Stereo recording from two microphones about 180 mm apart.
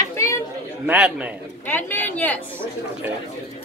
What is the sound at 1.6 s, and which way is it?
Speech, 10° left (ahead or behind).